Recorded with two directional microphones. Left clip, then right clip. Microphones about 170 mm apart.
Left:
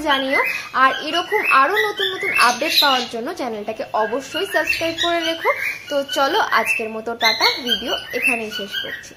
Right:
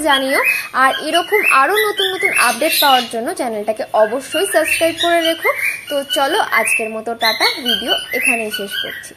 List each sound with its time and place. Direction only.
0.0 s speech: 35° right (ahead or behind)